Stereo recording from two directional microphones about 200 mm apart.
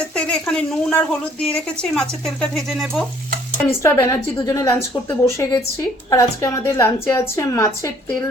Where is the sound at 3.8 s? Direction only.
15° left (ahead or behind).